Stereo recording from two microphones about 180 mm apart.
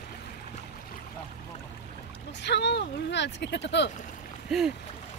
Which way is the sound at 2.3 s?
75° left (ahead or behind).